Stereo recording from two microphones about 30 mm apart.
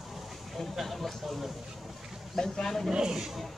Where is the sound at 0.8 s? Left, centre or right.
Centre.